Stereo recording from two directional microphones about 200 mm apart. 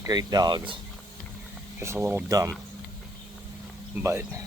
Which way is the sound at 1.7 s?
15° right (ahead or behind).